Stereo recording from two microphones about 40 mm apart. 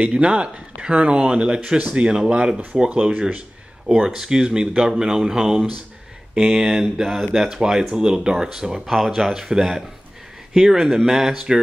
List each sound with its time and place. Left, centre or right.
0.1 s speech: right
3.8 s speech: centre
8.8 s speech: centre
9.1 s speech: centre